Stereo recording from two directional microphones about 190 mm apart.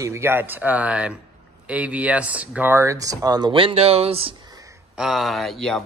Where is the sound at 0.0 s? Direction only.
15° right (ahead or behind); by 4.4 s 30° right (ahead or behind).